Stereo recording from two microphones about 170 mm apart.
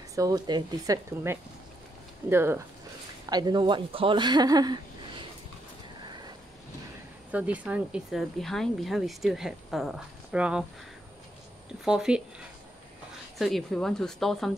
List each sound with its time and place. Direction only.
0.1 s speech: 20° right (ahead or behind)
7.2 s speech: 10° right (ahead or behind)
11.8 s speech: 5° right (ahead or behind)
13.4 s speech: centre (ahead or behind)